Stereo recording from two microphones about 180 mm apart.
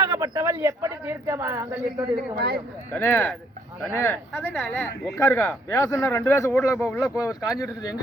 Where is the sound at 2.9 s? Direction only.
15° left (ahead or behind).